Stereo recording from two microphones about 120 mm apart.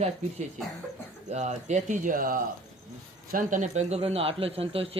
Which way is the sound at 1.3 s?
70° right (ahead or behind).